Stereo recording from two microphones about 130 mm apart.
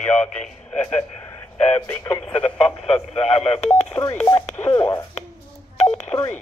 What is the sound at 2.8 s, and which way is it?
Speech, 50° left (ahead or behind).